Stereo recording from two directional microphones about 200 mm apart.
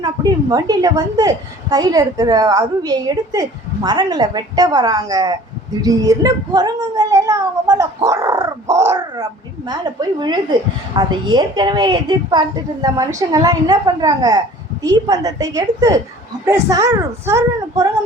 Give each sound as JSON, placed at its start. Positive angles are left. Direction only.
{"t": 0.0, "sound": "a woman's voice", "side_deg": -20}